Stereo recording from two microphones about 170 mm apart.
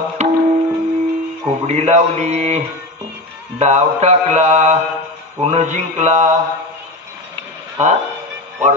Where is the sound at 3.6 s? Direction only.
40° right (ahead or behind).